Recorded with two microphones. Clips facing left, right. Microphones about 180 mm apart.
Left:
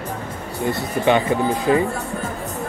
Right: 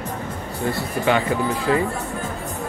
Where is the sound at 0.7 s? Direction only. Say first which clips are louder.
Left 3 dB; 20° left (ahead or behind).